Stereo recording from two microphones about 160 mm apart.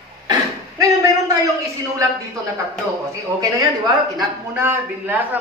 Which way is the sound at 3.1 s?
20° right (ahead or behind).